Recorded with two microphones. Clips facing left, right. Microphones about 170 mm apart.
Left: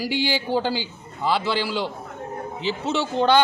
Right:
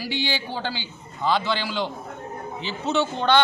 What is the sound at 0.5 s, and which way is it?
Speech, 40° left (ahead or behind).